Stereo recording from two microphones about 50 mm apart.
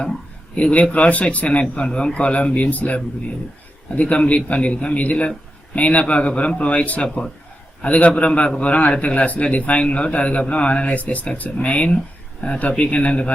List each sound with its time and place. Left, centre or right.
0.5 s a man's voice: left